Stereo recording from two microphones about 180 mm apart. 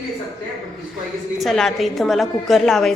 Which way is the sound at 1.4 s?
Centre (ahead or behind).